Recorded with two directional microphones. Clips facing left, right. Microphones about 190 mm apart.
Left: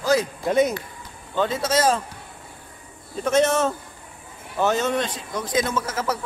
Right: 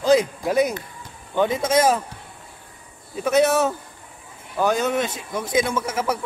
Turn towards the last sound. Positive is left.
turn(degrees=-10)  # may be behind; listen again after turning